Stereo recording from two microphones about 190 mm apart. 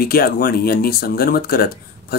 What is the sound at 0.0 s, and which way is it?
Speech, 50° left (ahead or behind).